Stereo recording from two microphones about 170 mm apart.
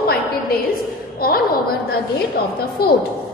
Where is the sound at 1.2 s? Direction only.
60° left (ahead or behind).